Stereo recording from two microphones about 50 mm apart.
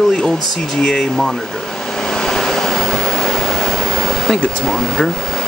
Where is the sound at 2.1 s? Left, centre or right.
Centre.